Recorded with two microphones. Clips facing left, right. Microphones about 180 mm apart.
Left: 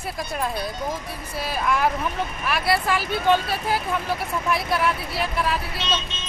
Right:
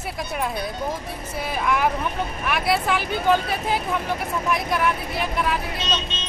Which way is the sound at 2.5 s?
Centre (ahead or behind).